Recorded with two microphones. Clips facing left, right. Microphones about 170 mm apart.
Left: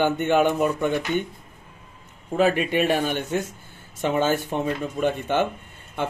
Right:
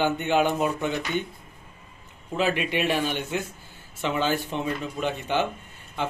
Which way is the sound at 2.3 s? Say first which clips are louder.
Left 5 dB; 45° left (ahead or behind).